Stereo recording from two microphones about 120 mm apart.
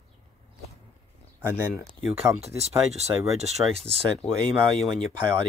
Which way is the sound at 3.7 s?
55° right (ahead or behind).